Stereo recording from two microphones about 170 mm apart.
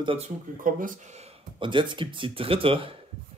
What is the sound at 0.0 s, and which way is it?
Speech, 30° right (ahead or behind).